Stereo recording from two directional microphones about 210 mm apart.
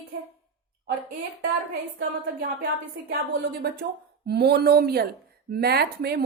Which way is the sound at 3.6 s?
50° right (ahead or behind).